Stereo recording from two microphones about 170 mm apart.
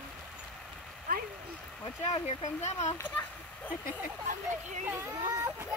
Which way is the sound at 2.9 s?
10° left (ahead or behind).